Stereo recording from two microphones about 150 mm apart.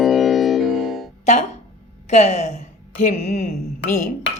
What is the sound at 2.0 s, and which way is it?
A woman's voice, 50° left (ahead or behind).